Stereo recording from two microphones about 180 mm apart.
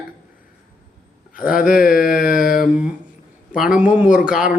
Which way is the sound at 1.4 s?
50° left (ahead or behind).